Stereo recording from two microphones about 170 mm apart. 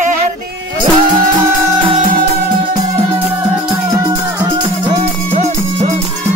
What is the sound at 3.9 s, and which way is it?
Music, 20° right (ahead or behind).